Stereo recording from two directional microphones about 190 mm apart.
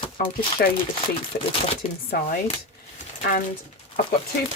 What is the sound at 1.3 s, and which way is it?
Speech, 60° left (ahead or behind).